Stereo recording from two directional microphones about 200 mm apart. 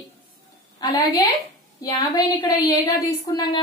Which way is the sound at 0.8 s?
20° left (ahead or behind).